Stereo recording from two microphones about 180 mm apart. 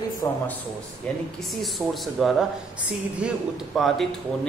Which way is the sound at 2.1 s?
Centre (ahead or behind).